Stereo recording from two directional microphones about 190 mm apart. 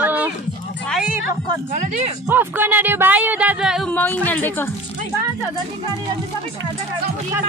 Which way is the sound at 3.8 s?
10° left (ahead or behind).